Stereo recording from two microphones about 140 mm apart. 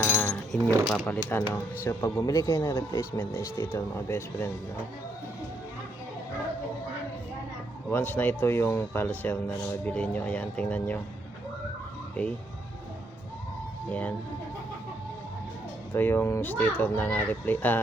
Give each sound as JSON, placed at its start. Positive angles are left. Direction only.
{"t": 0.0, "sound": "keys jangling", "side_deg": 20}
{"t": 0.9, "sound": "speech", "side_deg": 10}
{"t": 7.9, "sound": "speech", "side_deg": 15}
{"t": 12.2, "sound": "speech", "side_deg": 10}
{"t": 15.9, "sound": "speech", "side_deg": 15}